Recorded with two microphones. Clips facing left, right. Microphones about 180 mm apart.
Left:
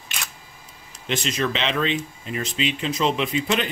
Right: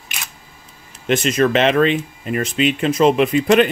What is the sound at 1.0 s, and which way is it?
Speech, 55° right (ahead or behind).